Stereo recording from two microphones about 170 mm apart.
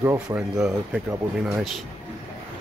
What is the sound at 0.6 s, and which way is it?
Speech, 5° right (ahead or behind).